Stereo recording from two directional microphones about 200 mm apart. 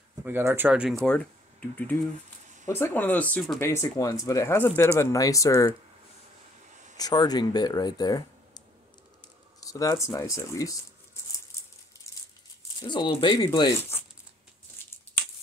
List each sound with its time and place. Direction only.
0.2 s speech: 10° right (ahead or behind); by 5.8 s 15° left (ahead or behind)
6.7 s a sound: 35° right (ahead or behind)
7.0 s speech: 20° left (ahead or behind)
12.8 s speech: 25° left (ahead or behind)